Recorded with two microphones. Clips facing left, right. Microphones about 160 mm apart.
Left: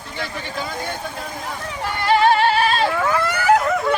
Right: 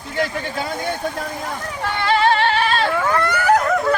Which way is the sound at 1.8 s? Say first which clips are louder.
Left 1 dB; 10° left (ahead or behind).